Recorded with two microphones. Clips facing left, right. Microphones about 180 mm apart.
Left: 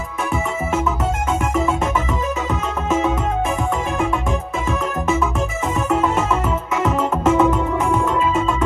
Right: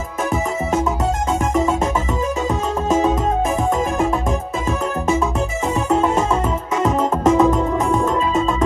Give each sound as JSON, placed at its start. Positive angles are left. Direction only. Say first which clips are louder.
{"t": 2.9, "sound": "music", "louder": "right 2 dB", "side_deg": -35}
{"t": 4.6, "sound": "music", "louder": "right 1 dB", "side_deg": -35}